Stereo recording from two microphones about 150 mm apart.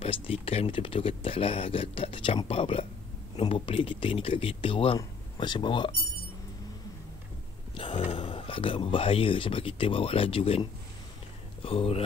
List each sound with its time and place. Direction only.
0.0 s speech: 40° left (ahead or behind)
7.7 s speech: 35° left (ahead or behind)